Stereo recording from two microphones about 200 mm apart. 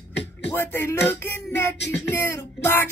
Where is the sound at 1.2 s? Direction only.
10° left (ahead or behind).